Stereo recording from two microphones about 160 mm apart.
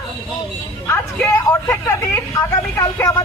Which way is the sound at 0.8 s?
10° left (ahead or behind).